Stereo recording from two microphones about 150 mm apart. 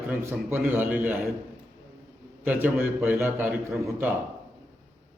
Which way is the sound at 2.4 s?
10° right (ahead or behind).